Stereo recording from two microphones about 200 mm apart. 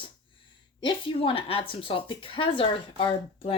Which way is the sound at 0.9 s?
25° left (ahead or behind).